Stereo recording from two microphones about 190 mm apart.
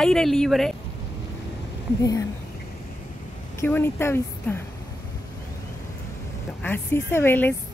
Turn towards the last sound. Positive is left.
turn(degrees=10)  # may be behind; listen again after turning